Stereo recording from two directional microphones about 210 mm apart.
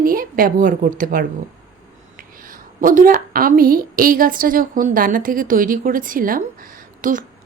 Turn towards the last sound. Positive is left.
turn(degrees=-40)  # may be behind; listen again after turning